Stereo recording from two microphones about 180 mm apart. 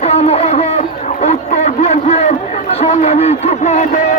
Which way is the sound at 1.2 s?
35° left (ahead or behind).